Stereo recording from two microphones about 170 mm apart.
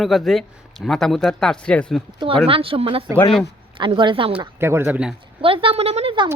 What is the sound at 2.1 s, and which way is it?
A woman's voice, 30° right (ahead or behind).